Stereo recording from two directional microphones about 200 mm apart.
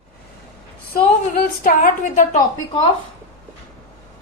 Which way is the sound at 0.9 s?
50° left (ahead or behind).